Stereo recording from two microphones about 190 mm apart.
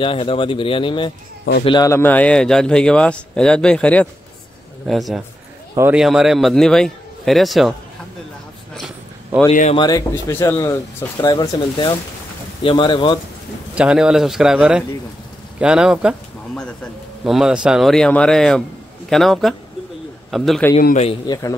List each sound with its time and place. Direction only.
0.0 s a man's voice: 30° left (ahead or behind); by 7.7 s centre (ahead or behind)
8.7 s a sound: centre (ahead or behind)
9.5 s a man's voice: 40° left (ahead or behind)
9.8 s speech: 20° left (ahead or behind)
13.7 s a man's voice: 5° right (ahead or behind)
20.8 s a man's voice: 35° left (ahead or behind)
21.3 s speech: 15° left (ahead or behind)